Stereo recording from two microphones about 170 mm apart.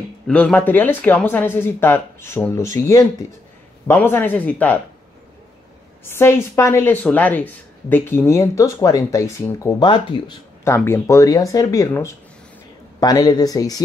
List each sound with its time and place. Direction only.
0.3 s a woman's voice: 10° left (ahead or behind)
6.0 s a woman's voice: 15° left (ahead or behind)
9.8 s speech: 30° left (ahead or behind)
10.6 s a woman's voice: 15° left (ahead or behind)